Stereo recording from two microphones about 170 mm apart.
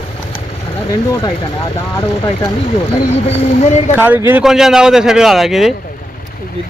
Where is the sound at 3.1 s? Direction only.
40° left (ahead or behind).